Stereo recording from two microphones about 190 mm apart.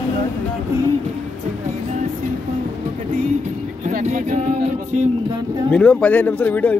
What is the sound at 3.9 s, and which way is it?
Speech, 40° right (ahead or behind).